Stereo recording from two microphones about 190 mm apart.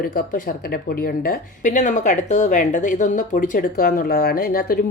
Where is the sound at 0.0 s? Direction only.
50° left (ahead or behind).